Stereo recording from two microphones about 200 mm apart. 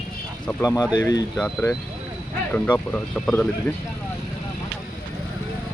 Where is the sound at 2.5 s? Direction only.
5° left (ahead or behind).